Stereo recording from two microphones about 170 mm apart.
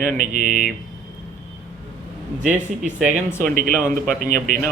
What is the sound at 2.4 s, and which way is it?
Speech, 45° right (ahead or behind).